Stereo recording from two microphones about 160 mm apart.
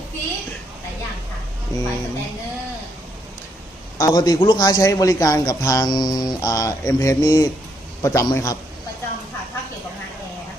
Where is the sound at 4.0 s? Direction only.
25° left (ahead or behind).